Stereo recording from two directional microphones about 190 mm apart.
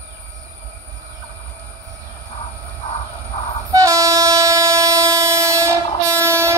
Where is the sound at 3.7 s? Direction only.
15° right (ahead or behind).